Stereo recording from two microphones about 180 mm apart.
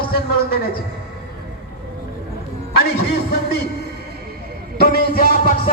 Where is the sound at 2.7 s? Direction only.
60° left (ahead or behind).